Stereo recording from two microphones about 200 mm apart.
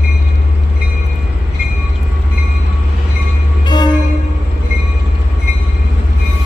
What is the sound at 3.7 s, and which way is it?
Train, 20° left (ahead or behind).